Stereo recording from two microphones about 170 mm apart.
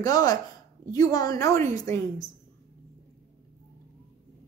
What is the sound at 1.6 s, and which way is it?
Speech, 50° right (ahead or behind).